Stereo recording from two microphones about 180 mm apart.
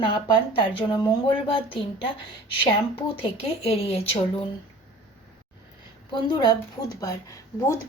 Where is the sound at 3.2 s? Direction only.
30° left (ahead or behind).